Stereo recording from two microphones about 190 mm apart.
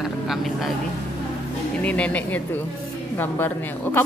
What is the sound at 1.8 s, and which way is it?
A woman's voice, 5° left (ahead or behind).